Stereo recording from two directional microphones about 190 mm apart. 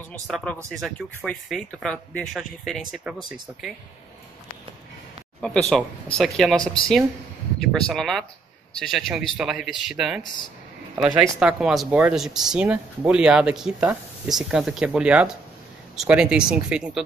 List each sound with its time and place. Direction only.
0.3 s speech: centre (ahead or behind)
5.4 s speech: 5° left (ahead or behind)